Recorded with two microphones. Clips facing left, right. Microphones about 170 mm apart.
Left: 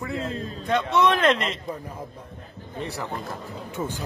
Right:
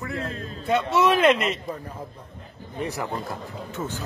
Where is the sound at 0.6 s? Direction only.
5° right (ahead or behind).